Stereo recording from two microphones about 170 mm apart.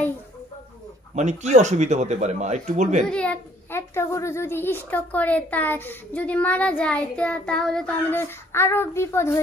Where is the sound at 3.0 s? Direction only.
5° left (ahead or behind).